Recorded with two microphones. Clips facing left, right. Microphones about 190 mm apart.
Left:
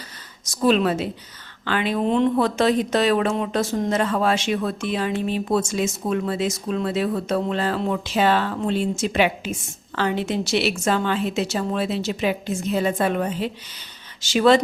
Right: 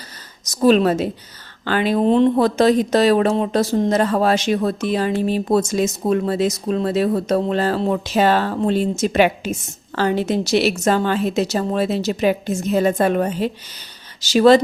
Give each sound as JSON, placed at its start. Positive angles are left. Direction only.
{"t": 0.4, "sound": "a woman's voice", "side_deg": -40}